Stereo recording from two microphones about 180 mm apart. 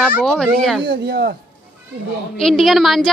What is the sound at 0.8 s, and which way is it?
Speech, 65° right (ahead or behind).